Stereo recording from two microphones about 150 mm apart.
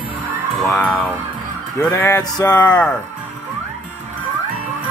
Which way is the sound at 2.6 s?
10° left (ahead or behind).